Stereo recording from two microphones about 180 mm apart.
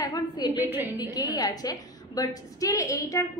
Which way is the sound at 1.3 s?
20° left (ahead or behind).